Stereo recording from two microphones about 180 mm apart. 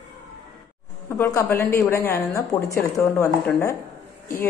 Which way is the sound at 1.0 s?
15° left (ahead or behind).